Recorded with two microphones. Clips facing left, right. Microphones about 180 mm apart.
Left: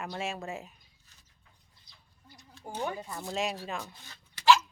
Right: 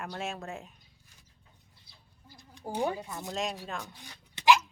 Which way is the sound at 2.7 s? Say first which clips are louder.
Right 5 dB; 30° right (ahead or behind).